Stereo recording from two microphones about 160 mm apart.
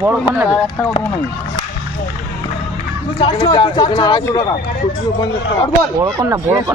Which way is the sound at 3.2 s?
30° left (ahead or behind).